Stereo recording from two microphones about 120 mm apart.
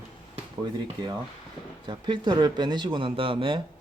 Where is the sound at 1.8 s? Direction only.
40° right (ahead or behind).